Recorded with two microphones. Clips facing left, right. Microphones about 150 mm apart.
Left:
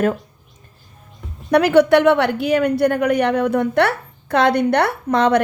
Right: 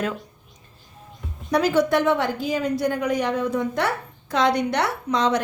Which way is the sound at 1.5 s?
65° left (ahead or behind).